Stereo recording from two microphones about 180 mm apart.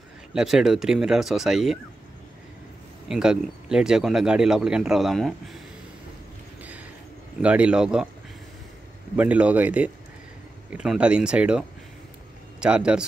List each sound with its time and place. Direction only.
0.3 s speech: 5° right (ahead or behind)
3.1 s speech: 5° right (ahead or behind)
7.4 s speech: 5° right (ahead or behind)
9.1 s a man's voice: 10° right (ahead or behind)